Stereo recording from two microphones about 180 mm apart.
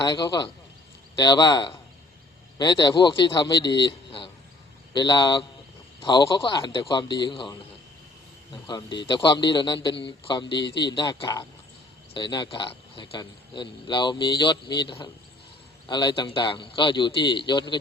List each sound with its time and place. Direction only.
0.0 s speech: 25° left (ahead or behind)
8.6 s speech: 25° left (ahead or behind)